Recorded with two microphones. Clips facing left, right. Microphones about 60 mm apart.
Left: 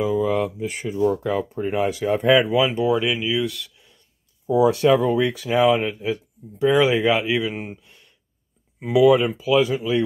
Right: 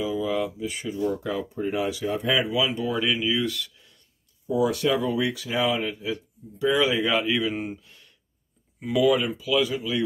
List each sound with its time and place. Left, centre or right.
0.0 s speech: left
2.8 s speech: centre
4.5 s speech: left
5.1 s speech: left
6.6 s speech: left
7.2 s speech: centre
9.0 s speech: left